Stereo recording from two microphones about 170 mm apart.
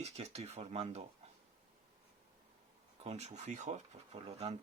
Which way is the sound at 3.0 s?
40° right (ahead or behind).